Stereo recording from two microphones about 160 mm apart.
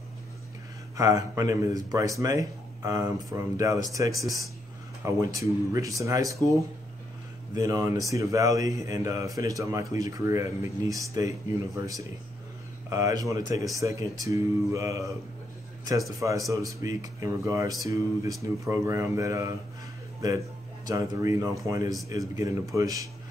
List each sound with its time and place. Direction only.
0.9 s a man's voice: 20° right (ahead or behind)
7.5 s a man's voice: 20° right (ahead or behind)
16.2 s a man's voice: 20° right (ahead or behind)